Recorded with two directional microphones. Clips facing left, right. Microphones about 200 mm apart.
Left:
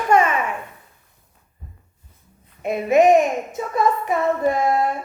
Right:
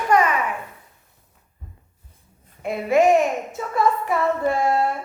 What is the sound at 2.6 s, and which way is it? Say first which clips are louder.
A child's voice: left 2 dB; 20° left (ahead or behind).